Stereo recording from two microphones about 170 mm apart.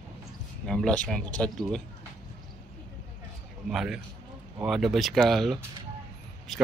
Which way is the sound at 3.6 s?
5° right (ahead or behind).